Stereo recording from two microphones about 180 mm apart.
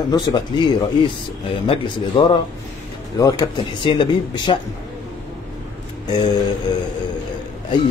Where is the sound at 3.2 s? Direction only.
20° left (ahead or behind).